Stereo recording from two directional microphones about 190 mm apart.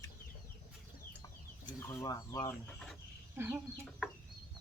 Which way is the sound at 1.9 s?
15° left (ahead or behind).